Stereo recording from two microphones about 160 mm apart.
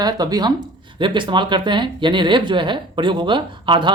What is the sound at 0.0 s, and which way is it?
Speech, 25° right (ahead or behind).